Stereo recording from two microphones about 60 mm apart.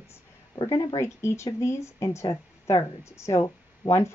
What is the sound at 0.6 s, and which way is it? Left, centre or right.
Speech, left.